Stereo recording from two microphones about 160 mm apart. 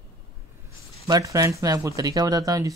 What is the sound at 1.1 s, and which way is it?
Speech, 20° right (ahead or behind).